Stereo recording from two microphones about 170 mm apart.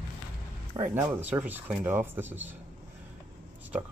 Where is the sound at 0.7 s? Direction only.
10° right (ahead or behind).